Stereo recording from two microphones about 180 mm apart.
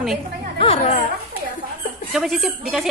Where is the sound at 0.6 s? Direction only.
35° left (ahead or behind).